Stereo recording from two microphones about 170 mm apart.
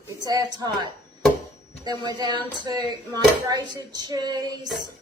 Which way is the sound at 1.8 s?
25° right (ahead or behind).